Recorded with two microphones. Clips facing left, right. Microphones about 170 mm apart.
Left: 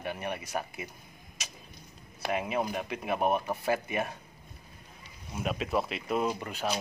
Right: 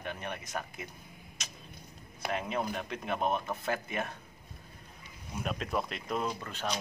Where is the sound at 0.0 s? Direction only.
10° left (ahead or behind).